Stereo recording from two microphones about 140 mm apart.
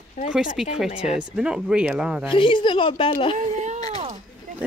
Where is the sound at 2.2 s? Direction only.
35° left (ahead or behind).